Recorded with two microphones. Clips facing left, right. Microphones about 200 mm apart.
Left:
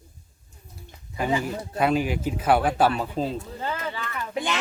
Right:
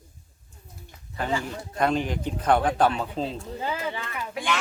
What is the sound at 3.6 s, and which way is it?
Speech, 10° right (ahead or behind).